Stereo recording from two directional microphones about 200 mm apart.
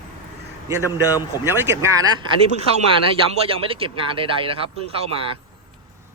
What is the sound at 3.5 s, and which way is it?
Speech, 25° right (ahead or behind).